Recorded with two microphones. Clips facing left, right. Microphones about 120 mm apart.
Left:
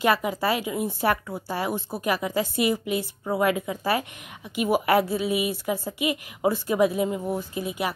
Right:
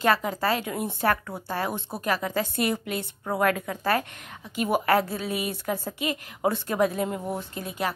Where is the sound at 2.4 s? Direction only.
55° right (ahead or behind).